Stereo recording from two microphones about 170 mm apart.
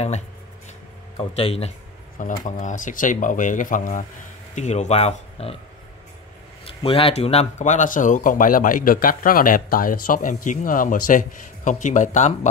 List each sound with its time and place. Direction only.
1.1 s speech: 35° left (ahead or behind)
2.1 s speech: 50° left (ahead or behind)
6.8 s speech: 35° left (ahead or behind)